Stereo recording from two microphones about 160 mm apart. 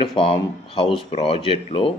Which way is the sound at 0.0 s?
35° left (ahead or behind).